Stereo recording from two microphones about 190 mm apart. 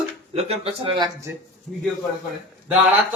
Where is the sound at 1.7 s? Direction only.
Centre (ahead or behind).